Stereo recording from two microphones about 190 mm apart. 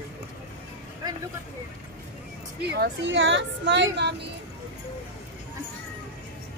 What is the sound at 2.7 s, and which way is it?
A woman's voice, 65° right (ahead or behind).